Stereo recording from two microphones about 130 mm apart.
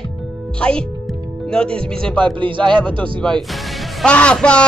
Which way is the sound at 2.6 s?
5° left (ahead or behind).